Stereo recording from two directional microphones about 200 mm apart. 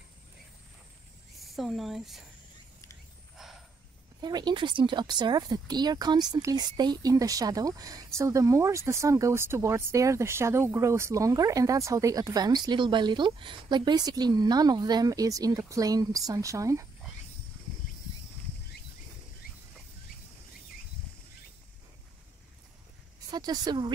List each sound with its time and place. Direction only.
1.5 s speech: centre (ahead or behind)
3.3 s a sound: centre (ahead or behind)
4.2 s speech: 20° right (ahead or behind)
23.3 s speech: 20° right (ahead or behind)